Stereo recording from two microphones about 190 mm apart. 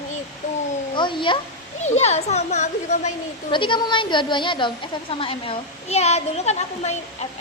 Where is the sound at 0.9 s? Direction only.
25° left (ahead or behind).